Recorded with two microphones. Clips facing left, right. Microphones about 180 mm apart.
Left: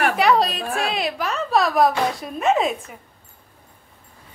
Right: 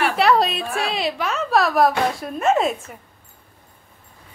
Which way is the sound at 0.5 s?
40° left (ahead or behind).